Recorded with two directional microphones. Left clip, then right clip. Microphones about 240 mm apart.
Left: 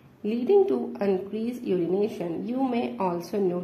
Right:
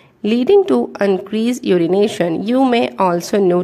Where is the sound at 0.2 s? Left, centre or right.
Right.